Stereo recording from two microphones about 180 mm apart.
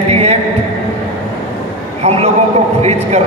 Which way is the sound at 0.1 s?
35° right (ahead or behind).